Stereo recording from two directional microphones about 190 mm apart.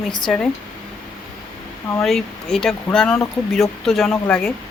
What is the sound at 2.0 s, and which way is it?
Speech, centre (ahead or behind).